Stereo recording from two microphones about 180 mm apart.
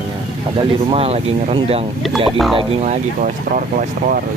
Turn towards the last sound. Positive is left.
turn(degrees=-50)  # may be behind; listen again after turning